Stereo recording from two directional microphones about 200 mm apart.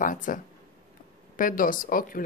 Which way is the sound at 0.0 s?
40° left (ahead or behind).